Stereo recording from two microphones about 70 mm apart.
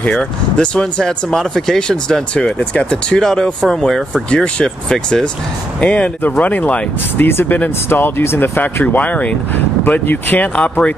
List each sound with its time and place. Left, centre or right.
0.0 s speech: centre
3.2 s speech: centre; by 7.7 s left
7.9 s speech: left
8.8 s speech: left